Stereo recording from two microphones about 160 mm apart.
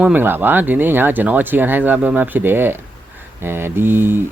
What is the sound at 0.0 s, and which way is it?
Speech, 10° right (ahead or behind).